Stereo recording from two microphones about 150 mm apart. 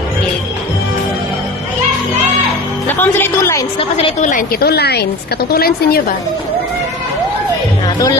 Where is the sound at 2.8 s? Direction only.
15° left (ahead or behind).